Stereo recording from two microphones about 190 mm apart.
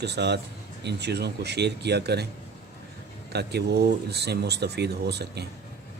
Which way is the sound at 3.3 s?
60° right (ahead or behind).